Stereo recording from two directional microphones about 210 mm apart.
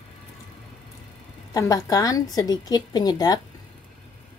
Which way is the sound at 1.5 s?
15° left (ahead or behind).